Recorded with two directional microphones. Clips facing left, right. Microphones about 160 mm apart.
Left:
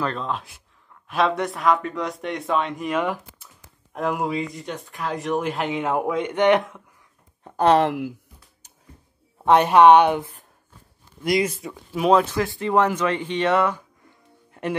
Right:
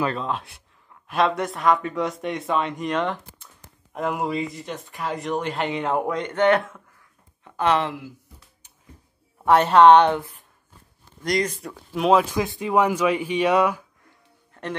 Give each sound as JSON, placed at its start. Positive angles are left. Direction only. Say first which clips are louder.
{"t": 0.0, "sound": "speech", "louder": "right 1 dB", "side_deg": -5}
{"t": 7.4, "sound": "speech", "louder": "left 5 dB", "side_deg": 40}
{"t": 8.6, "sound": "a sound", "louder": "left 2 dB", "side_deg": 40}
{"t": 9.4, "sound": "a woman's voice", "louder": "even", "side_deg": 15}
{"t": 11.2, "sound": "speech", "louder": "left 2 dB", "side_deg": 5}
{"t": 12.4, "sound": "speech", "louder": "left 1 dB", "side_deg": -15}
{"t": 14.5, "sound": "music", "louder": "left 4 dB", "side_deg": 10}